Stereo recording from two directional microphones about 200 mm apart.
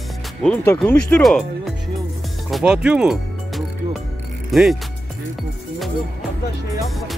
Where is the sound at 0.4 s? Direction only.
5° left (ahead or behind).